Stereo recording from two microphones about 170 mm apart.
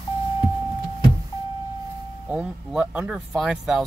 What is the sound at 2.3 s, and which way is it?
Speech, 5° right (ahead or behind).